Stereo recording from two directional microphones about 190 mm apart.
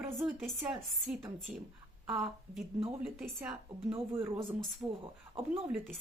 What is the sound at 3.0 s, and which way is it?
A woman's voice, 10° right (ahead or behind).